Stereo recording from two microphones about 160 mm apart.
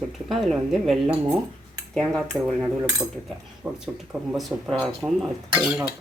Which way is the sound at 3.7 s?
25° right (ahead or behind).